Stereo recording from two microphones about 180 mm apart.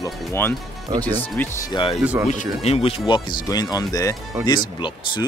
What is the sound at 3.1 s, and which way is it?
Speech, 25° left (ahead or behind).